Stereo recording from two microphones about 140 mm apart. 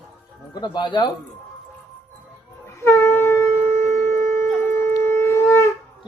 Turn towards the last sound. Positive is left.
turn(degrees=20)  # may be behind; listen again after turning